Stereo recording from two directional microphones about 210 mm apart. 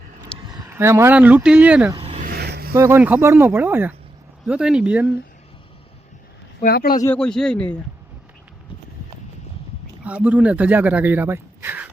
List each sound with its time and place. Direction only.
0.4 s speech: 15° right (ahead or behind)
2.0 s vehicle: 25° right (ahead or behind)
2.2 s a sound: 50° right (ahead or behind)
2.7 s a man's voice: 10° right (ahead or behind)
6.6 s speech: 45° left (ahead or behind)
7.0 s a man's voice: 5° left (ahead or behind)
10.0 s speech: 5° right (ahead or behind)